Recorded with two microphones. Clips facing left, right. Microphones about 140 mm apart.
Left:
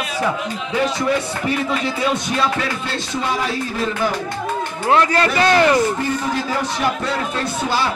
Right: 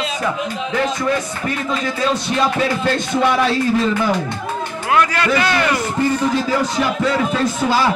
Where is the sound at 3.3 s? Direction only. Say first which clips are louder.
Right 5 dB; 80° right.